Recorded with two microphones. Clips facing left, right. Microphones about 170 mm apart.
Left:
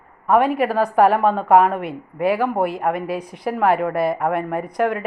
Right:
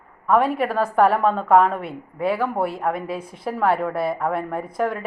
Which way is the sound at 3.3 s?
75° left (ahead or behind).